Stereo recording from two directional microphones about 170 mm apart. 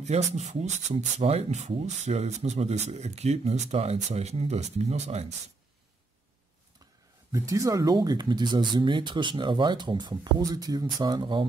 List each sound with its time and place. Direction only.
0.0 s speech: 40° right (ahead or behind)
7.3 s speech: 20° right (ahead or behind)